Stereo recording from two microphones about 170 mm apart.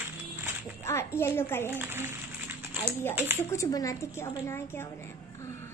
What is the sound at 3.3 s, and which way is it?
A woman's voice, 15° left (ahead or behind).